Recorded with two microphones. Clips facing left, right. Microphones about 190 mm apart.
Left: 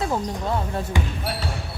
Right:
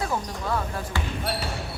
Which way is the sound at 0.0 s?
25° left (ahead or behind).